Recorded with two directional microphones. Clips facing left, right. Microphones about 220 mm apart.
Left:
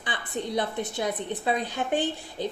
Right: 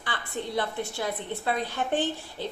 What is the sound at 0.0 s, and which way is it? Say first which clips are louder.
A woman's voice: left 2 dB; 20° left (ahead or behind).